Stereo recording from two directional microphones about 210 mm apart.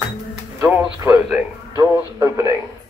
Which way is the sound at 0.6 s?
5° right (ahead or behind).